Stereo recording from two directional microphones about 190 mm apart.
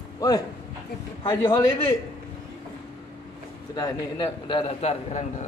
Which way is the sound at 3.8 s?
20° left (ahead or behind).